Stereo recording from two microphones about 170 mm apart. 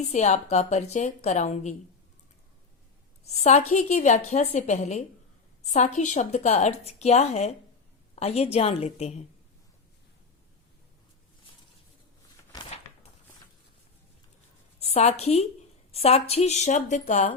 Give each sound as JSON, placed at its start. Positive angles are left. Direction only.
{"t": 0.1, "sound": "a woman's voice", "side_deg": 40}
{"t": 3.2, "sound": "a woman's voice", "side_deg": 40}
{"t": 14.8, "sound": "a woman's voice", "side_deg": 40}